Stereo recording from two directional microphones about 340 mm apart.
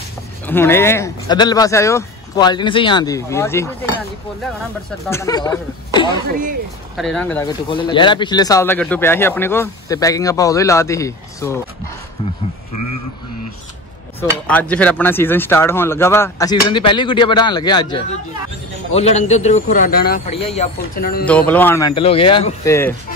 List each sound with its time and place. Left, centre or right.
0.5 s speech: centre
5.0 s speech: centre
7.0 s speech: centre
7.7 s speech: centre
14.5 s speech: centre; by 21.3 s left
21.3 s speech: centre